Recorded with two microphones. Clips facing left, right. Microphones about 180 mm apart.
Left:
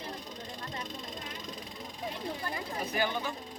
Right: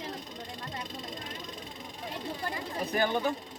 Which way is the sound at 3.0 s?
50° right (ahead or behind).